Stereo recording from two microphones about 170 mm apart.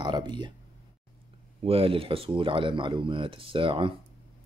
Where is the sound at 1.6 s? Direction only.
35° right (ahead or behind).